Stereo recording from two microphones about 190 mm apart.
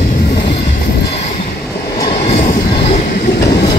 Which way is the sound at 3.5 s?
25° left (ahead or behind).